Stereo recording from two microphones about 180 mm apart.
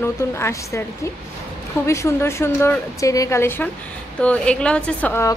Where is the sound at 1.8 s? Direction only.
15° left (ahead or behind).